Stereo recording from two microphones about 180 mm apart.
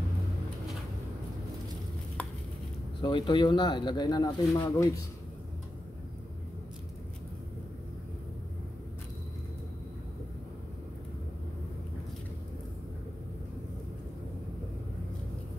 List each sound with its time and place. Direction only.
3.0 s speech: 25° left (ahead or behind)